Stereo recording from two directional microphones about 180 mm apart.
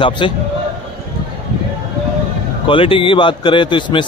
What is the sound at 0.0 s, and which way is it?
Speech, 30° left (ahead or behind).